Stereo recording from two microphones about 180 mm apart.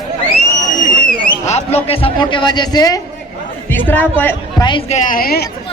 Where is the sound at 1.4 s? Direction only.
35° left (ahead or behind).